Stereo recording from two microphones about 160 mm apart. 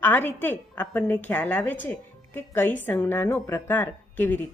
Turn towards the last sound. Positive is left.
turn(degrees=10)  # may be behind; listen again after turning